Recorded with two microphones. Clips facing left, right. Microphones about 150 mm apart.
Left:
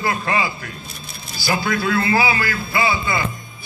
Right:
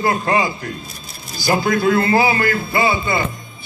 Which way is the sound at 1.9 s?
40° right (ahead or behind).